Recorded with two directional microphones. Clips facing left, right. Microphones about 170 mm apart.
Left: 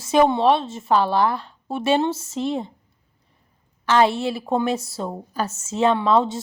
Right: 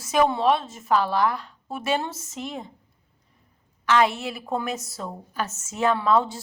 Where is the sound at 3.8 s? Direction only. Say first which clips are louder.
Left 3 dB; 30° left (ahead or behind).